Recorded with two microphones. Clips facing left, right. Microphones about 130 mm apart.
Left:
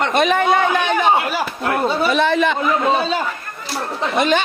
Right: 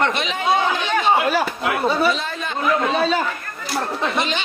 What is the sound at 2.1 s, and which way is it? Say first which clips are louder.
Speech: left 11 dB; 80° left.